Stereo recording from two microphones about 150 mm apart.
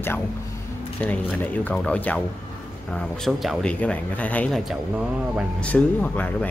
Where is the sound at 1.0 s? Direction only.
10° left (ahead or behind).